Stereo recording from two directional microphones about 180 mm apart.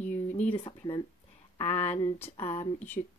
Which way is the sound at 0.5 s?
25° left (ahead or behind).